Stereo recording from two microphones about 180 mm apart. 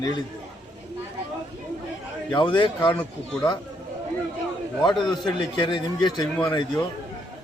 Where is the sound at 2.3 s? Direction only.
25° left (ahead or behind).